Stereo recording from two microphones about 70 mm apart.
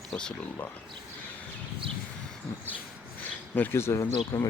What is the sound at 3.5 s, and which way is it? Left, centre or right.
Speech, left.